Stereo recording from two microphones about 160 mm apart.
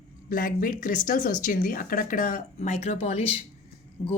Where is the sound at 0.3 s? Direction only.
60° left (ahead or behind).